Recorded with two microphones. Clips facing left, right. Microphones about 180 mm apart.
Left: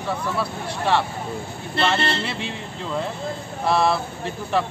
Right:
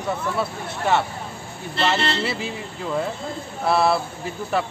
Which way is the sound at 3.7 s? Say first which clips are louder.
Right 1 dB; 5° right (ahead or behind).